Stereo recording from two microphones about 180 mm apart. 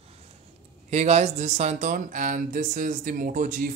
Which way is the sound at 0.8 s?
40° right (ahead or behind).